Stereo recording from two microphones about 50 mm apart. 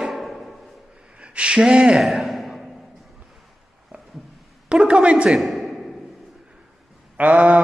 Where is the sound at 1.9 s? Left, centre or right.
Centre.